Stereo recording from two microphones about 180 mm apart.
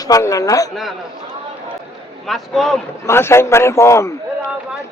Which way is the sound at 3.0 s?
15° left (ahead or behind).